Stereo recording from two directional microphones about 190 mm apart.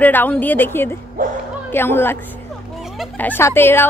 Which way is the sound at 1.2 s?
45° right (ahead or behind).